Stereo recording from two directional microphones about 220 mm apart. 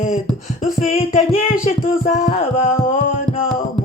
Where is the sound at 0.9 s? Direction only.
30° left (ahead or behind).